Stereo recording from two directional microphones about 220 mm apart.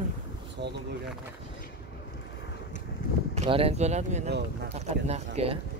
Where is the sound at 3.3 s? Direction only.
30° right (ahead or behind).